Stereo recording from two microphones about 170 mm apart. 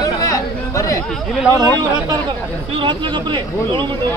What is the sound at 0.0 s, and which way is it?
Chatter, 20° left (ahead or behind).